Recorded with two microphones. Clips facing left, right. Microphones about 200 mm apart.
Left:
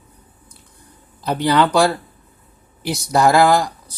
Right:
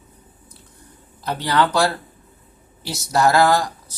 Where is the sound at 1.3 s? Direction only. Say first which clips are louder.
Left 4 dB; 15° left (ahead or behind).